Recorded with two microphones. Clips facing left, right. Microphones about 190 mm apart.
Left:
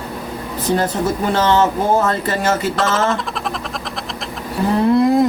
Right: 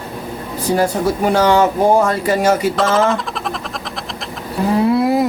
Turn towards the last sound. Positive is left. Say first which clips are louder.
# left 2 dB
turn(degrees=-5)  # may be behind; listen again after turning